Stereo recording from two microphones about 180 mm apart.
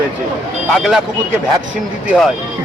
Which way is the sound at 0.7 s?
Centre (ahead or behind).